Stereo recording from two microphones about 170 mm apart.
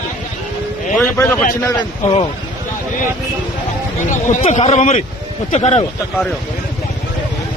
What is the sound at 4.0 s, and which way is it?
A man's voice, 45° left (ahead or behind).